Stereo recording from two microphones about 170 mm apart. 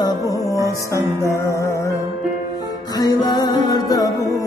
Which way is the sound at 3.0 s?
25° left (ahead or behind).